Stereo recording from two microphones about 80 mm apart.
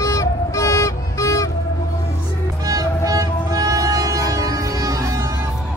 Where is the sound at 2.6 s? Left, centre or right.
Right.